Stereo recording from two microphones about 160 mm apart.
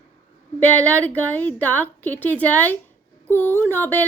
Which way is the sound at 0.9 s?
10° left (ahead or behind).